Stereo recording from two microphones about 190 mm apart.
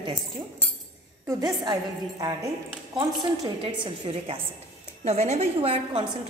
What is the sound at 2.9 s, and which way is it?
A woman's voice, 25° right (ahead or behind).